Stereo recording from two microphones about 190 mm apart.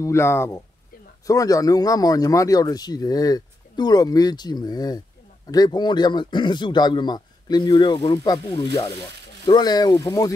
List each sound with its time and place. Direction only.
0.0 s speech: 15° left (ahead or behind)